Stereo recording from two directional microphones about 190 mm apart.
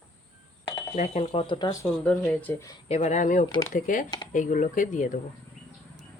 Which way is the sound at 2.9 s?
40° left (ahead or behind).